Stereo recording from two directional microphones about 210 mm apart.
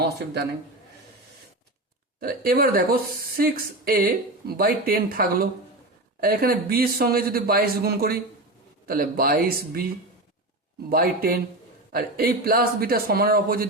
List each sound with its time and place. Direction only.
2.2 s speech: 45° right (ahead or behind)
10.8 s speech: 45° right (ahead or behind)